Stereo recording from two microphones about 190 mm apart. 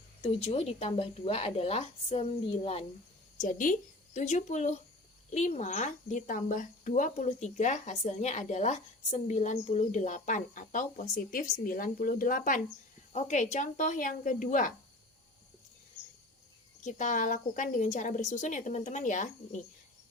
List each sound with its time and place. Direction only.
0.2 s speech: 35° left (ahead or behind)
3.3 s speech: 40° left (ahead or behind)
16.8 s speech: 40° left (ahead or behind)